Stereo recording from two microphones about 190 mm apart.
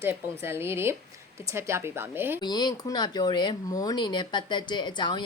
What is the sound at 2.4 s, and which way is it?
Speech, 20° left (ahead or behind).